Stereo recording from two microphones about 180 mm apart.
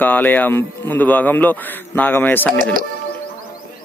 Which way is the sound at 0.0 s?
10° left (ahead or behind).